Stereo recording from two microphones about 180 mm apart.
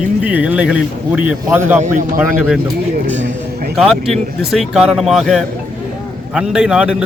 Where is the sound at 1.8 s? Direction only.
45° right (ahead or behind).